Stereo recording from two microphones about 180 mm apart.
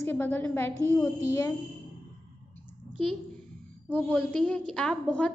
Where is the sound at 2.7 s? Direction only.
5° left (ahead or behind).